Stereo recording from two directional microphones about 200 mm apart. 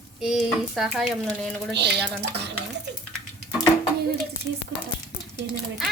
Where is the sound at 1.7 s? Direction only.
55° right (ahead or behind).